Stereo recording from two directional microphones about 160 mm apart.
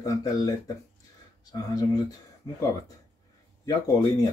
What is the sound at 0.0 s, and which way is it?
Speech, 25° left (ahead or behind).